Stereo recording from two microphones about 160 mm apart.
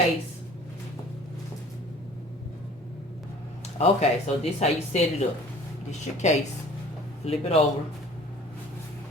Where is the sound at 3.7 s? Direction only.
45° left (ahead or behind).